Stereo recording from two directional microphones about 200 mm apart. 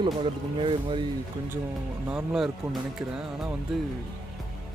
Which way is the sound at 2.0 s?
5° right (ahead or behind).